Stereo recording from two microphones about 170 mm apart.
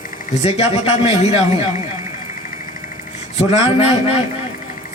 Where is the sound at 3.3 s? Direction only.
35° left (ahead or behind).